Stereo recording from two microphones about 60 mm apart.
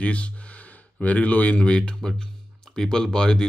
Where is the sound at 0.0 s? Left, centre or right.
Centre.